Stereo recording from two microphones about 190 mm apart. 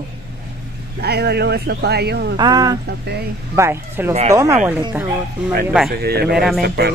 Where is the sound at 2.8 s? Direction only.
60° right (ahead or behind).